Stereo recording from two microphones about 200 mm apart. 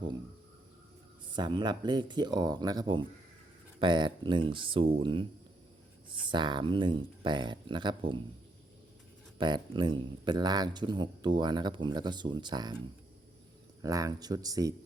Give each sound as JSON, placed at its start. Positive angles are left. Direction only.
{"t": 1.3, "sound": "speech", "side_deg": -25}
{"t": 6.2, "sound": "speech", "side_deg": -20}
{"t": 9.4, "sound": "speech", "side_deg": -20}
{"t": 13.8, "sound": "speech", "side_deg": -15}